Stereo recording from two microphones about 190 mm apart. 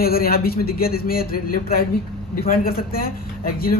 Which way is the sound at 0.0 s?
55° left (ahead or behind).